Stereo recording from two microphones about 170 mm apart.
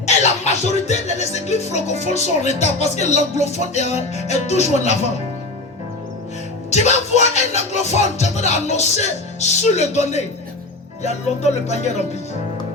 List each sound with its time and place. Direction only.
0.0 s music: 40° left (ahead or behind)
6.7 s music: 40° left (ahead or behind)